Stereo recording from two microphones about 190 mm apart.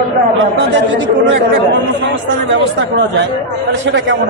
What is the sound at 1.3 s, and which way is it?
Speech, 70° right (ahead or behind).